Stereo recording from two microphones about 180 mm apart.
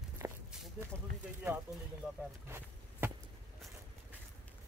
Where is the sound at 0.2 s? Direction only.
15° right (ahead or behind).